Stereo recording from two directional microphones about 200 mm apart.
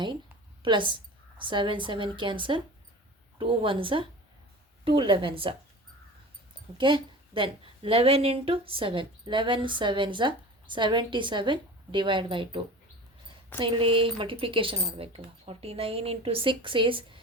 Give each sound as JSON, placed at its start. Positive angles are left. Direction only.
{"t": 0.6, "sound": "a woman's voice", "side_deg": -25}
{"t": 6.7, "sound": "a woman's voice", "side_deg": -25}
{"t": 13.6, "sound": "a woman's voice", "side_deg": -25}